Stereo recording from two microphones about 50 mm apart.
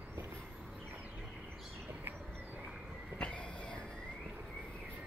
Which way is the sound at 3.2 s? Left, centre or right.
Left.